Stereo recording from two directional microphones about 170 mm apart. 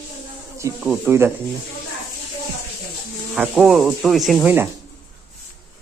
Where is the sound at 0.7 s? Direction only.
10° right (ahead or behind).